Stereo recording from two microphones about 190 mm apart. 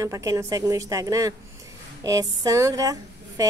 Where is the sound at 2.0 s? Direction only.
20° right (ahead or behind).